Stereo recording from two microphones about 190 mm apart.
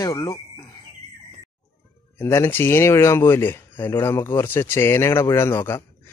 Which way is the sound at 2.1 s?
10° left (ahead or behind).